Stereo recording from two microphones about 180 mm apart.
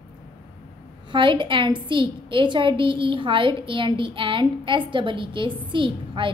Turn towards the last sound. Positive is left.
turn(degrees=-25)  # may be behind; listen again after turning